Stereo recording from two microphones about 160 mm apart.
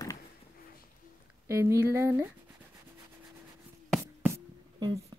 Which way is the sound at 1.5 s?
15° right (ahead or behind).